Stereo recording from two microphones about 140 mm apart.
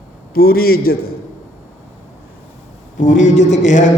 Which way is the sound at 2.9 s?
65° left (ahead or behind).